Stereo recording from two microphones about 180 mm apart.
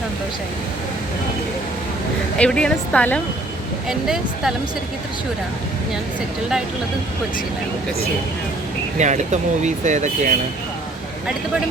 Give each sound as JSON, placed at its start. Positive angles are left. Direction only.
{"t": 2.4, "sound": "speech", "side_deg": 5}
{"t": 9.0, "sound": "speech", "side_deg": -40}